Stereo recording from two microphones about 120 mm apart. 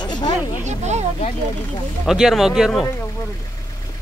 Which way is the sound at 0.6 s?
70° right (ahead or behind).